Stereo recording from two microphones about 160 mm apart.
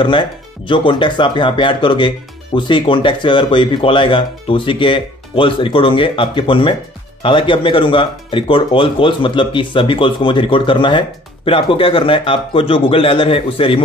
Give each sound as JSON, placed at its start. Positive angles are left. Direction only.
{"t": 0.0, "sound": "speech", "side_deg": 30}